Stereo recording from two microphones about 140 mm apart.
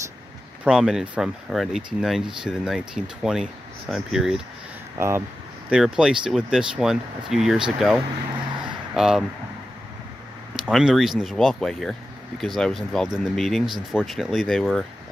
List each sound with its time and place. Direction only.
0.7 s speech: 5° right (ahead or behind)
4.9 s speech: 15° right (ahead or behind)
5.7 s speech: 5° right (ahead or behind)
10.5 s speech: 5° right (ahead or behind)